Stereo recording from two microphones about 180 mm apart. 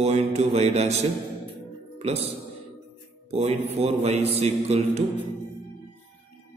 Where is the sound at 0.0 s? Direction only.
35° right (ahead or behind).